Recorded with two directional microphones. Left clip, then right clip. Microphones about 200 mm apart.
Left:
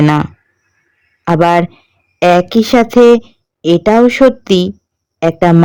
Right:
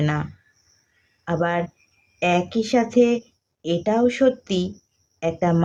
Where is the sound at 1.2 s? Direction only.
55° left (ahead or behind).